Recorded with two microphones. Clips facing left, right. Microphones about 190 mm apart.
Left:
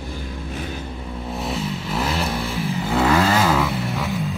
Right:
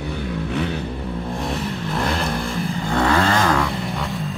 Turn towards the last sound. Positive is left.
turn(degrees=0)  # may be behind; listen again after turning